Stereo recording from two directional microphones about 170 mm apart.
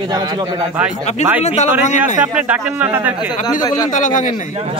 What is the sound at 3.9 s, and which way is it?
Speech, 50° left (ahead or behind).